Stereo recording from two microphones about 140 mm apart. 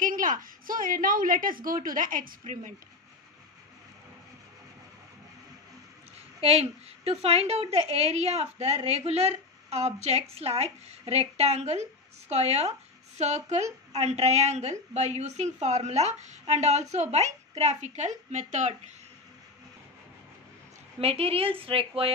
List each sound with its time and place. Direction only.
0.0 s a woman's voice: 70° right (ahead or behind)
6.4 s a woman's voice: 45° right (ahead or behind)
21.0 s a woman's voice: 45° right (ahead or behind)